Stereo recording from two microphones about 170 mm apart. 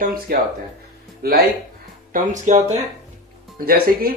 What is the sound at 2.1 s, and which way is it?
Speech, 45° right (ahead or behind).